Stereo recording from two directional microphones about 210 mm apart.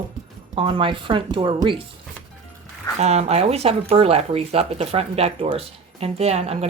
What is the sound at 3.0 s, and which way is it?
Speech, 30° right (ahead or behind).